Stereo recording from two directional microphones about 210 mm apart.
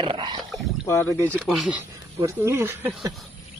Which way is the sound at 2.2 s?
15° right (ahead or behind).